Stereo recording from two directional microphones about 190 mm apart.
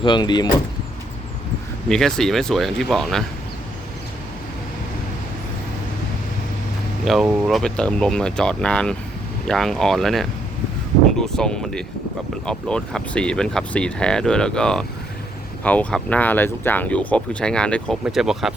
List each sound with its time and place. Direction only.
0.0 s speech: 25° left (ahead or behind)
1.9 s speech: 5° left (ahead or behind)
7.0 s speech: centre (ahead or behind)